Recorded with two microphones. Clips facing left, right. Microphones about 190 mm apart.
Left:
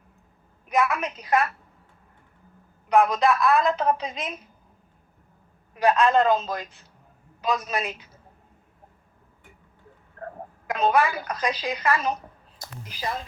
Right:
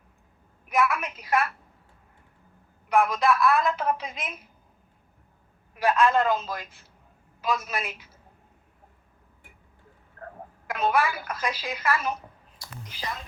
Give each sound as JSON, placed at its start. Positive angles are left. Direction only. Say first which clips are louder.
{"t": 0.7, "sound": "a woman's voice", "louder": "left 1 dB", "side_deg": 20}
{"t": 2.9, "sound": "a man's voice", "louder": "left 2 dB", "side_deg": 20}
{"t": 5.7, "sound": "a man's voice", "louder": "left 2 dB", "side_deg": 20}
{"t": 10.7, "sound": "a woman's voice", "louder": "left 3 dB", "side_deg": 20}
{"t": 12.1, "sound": "a sound", "louder": "left 2 dB", "side_deg": 45}